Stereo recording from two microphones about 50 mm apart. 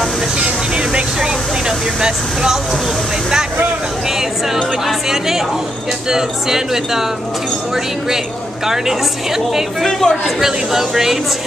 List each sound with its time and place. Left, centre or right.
0.4 s vehicle: centre
2.0 s speech: centre
4.8 s music: centre
6.0 s speech: centre
9.8 s speech: centre
10.4 s speech: centre